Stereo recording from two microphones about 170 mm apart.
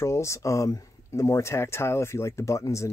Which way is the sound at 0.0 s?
15° left (ahead or behind).